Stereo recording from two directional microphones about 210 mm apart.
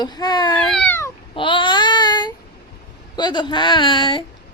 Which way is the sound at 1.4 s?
25° left (ahead or behind).